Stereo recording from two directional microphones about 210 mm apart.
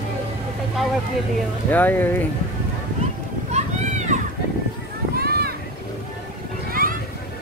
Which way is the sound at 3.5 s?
35° right (ahead or behind).